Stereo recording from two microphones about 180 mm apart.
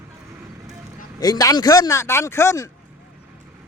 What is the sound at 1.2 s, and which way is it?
Speech, 20° left (ahead or behind).